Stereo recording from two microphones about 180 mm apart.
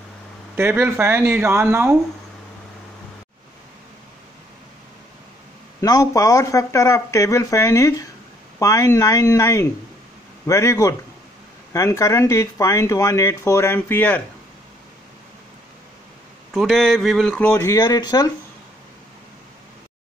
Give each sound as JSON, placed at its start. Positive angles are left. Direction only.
{"t": 0.6, "sound": "speech", "side_deg": -10}
{"t": 5.8, "sound": "speech", "side_deg": 20}
{"t": 16.5, "sound": "speech", "side_deg": 0}